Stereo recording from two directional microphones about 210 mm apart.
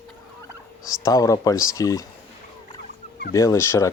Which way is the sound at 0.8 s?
15° left (ahead or behind).